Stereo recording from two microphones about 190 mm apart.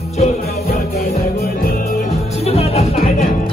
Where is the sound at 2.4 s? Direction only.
30° left (ahead or behind).